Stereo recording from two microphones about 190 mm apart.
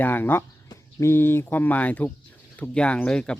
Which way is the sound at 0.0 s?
10° left (ahead or behind).